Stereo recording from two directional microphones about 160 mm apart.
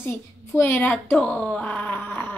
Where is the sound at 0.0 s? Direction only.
15° left (ahead or behind).